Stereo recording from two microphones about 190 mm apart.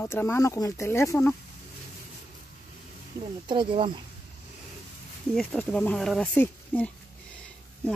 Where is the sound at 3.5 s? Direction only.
25° right (ahead or behind).